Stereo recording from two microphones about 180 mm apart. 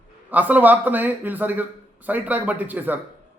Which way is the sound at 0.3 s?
10° right (ahead or behind).